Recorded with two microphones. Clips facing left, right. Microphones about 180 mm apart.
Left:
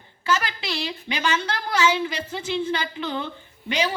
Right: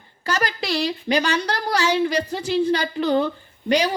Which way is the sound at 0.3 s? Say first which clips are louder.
Right 2 dB; 40° right (ahead or behind).